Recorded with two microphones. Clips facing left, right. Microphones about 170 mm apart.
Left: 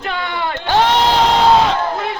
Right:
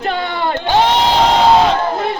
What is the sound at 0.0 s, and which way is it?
Crowd, 35° right (ahead or behind).